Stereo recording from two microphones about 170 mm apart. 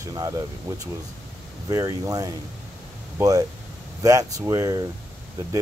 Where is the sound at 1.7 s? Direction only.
20° right (ahead or behind).